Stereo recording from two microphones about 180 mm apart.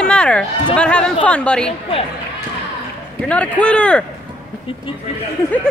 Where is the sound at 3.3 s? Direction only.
5° left (ahead or behind).